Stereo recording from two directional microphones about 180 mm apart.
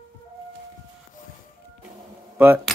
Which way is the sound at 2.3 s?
10° right (ahead or behind).